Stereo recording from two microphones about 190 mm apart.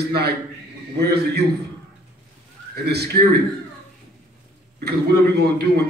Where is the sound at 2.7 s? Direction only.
60° right (ahead or behind).